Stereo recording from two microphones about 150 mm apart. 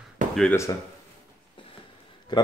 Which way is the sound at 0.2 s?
60° right (ahead or behind).